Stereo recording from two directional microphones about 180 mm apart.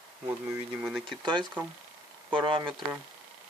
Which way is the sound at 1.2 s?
25° right (ahead or behind).